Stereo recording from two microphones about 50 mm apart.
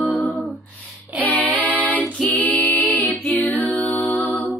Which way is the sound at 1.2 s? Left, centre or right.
Left.